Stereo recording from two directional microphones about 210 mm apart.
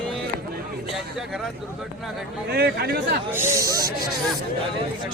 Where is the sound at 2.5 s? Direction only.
50° right (ahead or behind).